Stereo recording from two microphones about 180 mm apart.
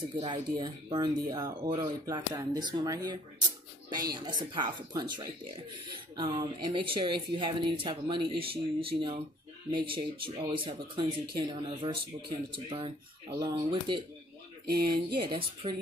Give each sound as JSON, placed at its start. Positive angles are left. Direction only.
{"t": 0.0, "sound": "speech", "side_deg": -25}
{"t": 14.7, "sound": "a sound", "side_deg": -60}
{"t": 15.1, "sound": "speech", "side_deg": -30}